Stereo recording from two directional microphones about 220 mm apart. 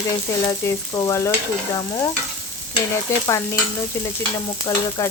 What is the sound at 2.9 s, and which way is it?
Speech, 15° left (ahead or behind).